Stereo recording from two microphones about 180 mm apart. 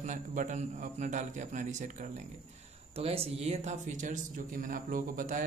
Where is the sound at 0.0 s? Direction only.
45° right (ahead or behind).